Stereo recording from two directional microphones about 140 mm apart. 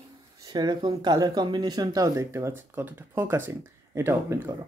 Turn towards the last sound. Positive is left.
turn(degrees=-15)  # may be behind; listen again after turning